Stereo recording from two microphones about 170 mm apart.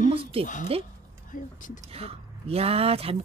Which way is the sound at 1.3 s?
50° left (ahead or behind).